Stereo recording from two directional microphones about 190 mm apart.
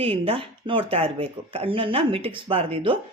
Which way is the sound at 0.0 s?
30° right (ahead or behind).